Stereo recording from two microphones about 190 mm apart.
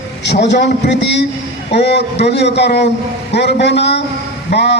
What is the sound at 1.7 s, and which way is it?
A man's voice, 65° left (ahead or behind).